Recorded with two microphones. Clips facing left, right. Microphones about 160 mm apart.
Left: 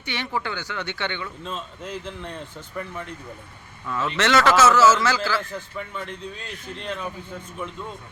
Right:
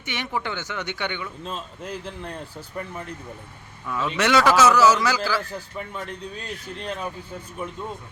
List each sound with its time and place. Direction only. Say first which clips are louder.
0.0 s a man's voice: even; 15° right (ahead or behind)
1.5 s speech: even; centre (ahead or behind)
3.8 s a man's voice: even; 15° right (ahead or behind)
5.5 s speech: even; 35° right (ahead or behind)